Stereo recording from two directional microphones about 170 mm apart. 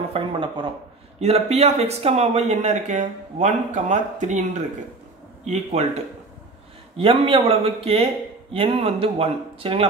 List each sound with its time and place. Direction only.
0.1 s speech: 30° right (ahead or behind)
7.0 s speech: 30° right (ahead or behind)